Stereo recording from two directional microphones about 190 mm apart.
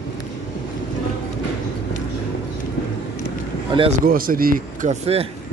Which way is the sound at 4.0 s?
50° right (ahead or behind).